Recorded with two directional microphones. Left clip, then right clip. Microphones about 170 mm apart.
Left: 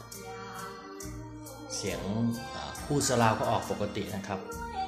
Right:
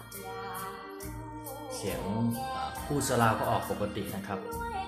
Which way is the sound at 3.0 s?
15° left (ahead or behind).